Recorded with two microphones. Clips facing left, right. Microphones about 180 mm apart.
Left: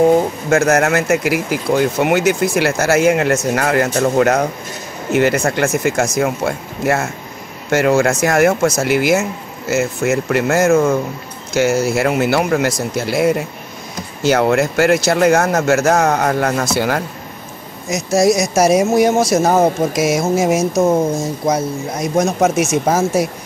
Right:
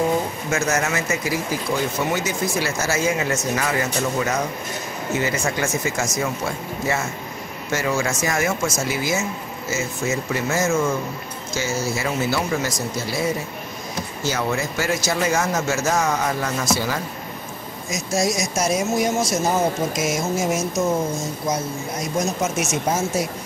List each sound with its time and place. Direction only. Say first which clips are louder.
0.5 s speech: left 9 dB; 65° left (ahead or behind)
22.1 s speech: left 9 dB; 60° left (ahead or behind)